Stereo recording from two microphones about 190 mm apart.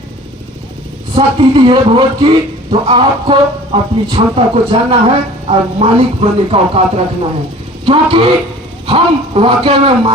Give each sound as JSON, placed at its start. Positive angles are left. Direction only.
{"t": 1.1, "sound": "a man's voice", "side_deg": -25}